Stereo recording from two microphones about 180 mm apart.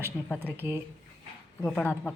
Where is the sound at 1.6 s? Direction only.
10° left (ahead or behind).